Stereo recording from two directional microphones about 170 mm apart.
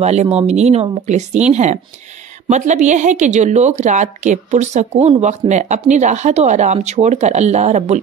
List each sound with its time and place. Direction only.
0.0 s a woman's voice: 40° right (ahead or behind)